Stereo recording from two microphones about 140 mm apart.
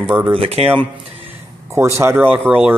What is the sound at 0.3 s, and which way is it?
Speech, 40° right (ahead or behind).